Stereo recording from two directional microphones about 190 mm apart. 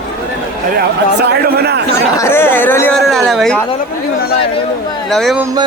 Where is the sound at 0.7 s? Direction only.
55° right (ahead or behind).